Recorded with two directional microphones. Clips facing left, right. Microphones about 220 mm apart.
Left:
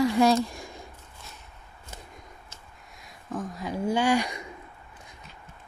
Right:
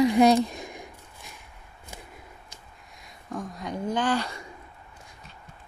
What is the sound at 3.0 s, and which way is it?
Speech, centre (ahead or behind).